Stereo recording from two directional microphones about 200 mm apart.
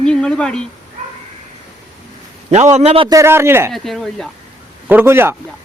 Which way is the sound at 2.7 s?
30° right (ahead or behind).